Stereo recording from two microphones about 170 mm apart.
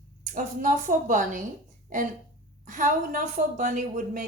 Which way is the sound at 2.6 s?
50° right (ahead or behind).